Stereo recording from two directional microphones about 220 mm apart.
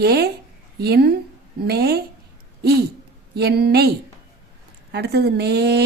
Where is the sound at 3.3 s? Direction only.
45° right (ahead or behind).